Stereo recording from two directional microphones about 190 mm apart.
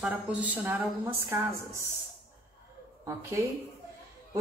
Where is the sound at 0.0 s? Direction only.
5° right (ahead or behind).